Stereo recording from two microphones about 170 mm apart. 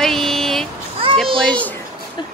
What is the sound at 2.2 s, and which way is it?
Speech, 25° left (ahead or behind).